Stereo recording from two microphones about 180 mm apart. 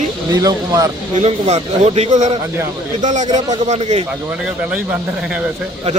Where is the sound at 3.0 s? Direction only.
40° right (ahead or behind).